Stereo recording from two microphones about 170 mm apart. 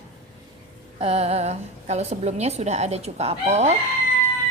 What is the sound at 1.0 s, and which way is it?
A woman's voice, 35° right (ahead or behind).